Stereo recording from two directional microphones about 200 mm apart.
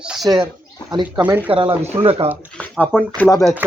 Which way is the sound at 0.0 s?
5° right (ahead or behind).